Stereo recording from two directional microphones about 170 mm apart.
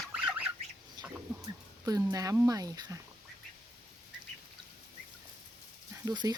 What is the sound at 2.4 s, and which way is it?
Speech, 20° right (ahead or behind).